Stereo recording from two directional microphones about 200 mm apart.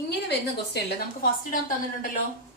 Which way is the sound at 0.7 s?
45° left (ahead or behind).